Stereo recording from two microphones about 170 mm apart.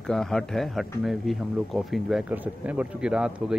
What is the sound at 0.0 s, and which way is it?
Speech, 5° left (ahead or behind).